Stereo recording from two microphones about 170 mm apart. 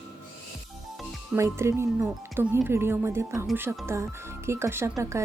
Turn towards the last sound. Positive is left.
turn(degrees=-15)  # may be behind; listen again after turning